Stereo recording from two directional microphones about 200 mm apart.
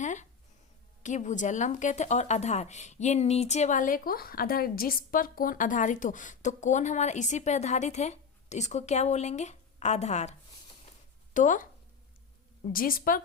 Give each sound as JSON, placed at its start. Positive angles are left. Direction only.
{"t": 0.0, "sound": "a sound", "side_deg": 35}
{"t": 1.0, "sound": "speech", "side_deg": 35}
{"t": 12.7, "sound": "a woman's voice", "side_deg": 45}